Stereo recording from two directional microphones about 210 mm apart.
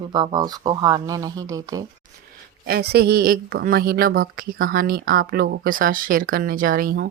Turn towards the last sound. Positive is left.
turn(degrees=-45)  # may be behind; listen again after turning